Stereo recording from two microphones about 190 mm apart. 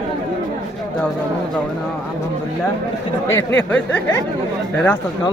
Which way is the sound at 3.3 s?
10° left (ahead or behind).